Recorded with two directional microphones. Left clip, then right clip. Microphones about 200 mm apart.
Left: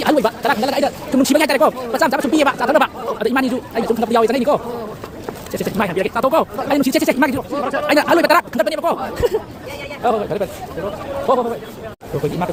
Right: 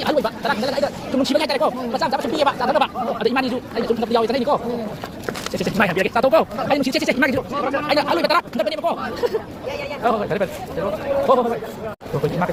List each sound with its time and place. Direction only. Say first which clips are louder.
0.0 s speech: left 4 dB; 55° left (ahead or behind)
5.7 s speech: right 1 dB; 15° left (ahead or behind)
6.7 s speech: left 5 dB; 35° left (ahead or behind)
7.9 s speech: left 6 dB; 50° left (ahead or behind)
10.0 s speech: left 3 dB; 35° left (ahead or behind)
11.3 s speech: left 1 dB; 25° left (ahead or behind)